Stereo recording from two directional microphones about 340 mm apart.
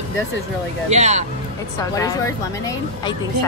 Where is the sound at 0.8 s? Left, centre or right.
Centre.